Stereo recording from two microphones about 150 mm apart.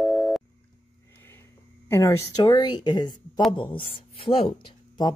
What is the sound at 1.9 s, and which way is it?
Speech, 20° left (ahead or behind).